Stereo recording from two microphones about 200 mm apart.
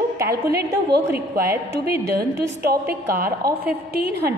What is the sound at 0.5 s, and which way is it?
A woman's voice, 55° right (ahead or behind).